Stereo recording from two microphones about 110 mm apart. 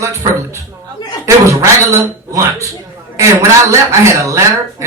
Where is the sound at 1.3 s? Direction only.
30° right (ahead or behind).